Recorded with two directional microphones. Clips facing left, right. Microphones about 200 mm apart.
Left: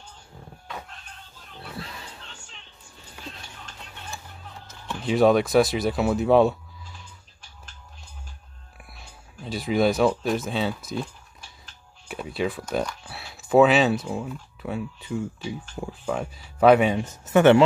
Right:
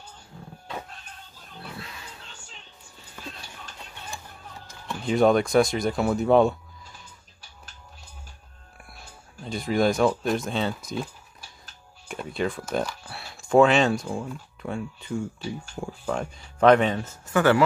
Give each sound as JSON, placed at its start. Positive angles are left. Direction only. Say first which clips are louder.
{"t": 1.8, "sound": "pig", "louder": "left 3 dB", "side_deg": 35}
{"t": 4.6, "sound": "speech", "louder": "left 1 dB", "side_deg": 5}
{"t": 8.9, "sound": "speech", "louder": "right 1 dB", "side_deg": 0}
{"t": 12.1, "sound": "speech", "louder": "left 1 dB", "side_deg": 0}